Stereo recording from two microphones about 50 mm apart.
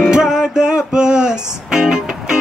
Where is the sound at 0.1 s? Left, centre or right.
Centre.